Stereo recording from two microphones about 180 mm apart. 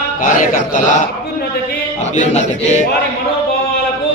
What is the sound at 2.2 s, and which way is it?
Speech, 40° left (ahead or behind).